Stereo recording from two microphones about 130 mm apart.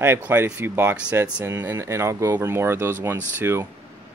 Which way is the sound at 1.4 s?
20° right (ahead or behind).